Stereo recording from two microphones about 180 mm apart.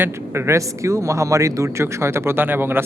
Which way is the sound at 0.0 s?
15° right (ahead or behind).